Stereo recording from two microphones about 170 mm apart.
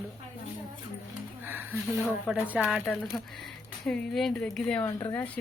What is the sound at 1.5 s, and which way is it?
Speech, 10° right (ahead or behind).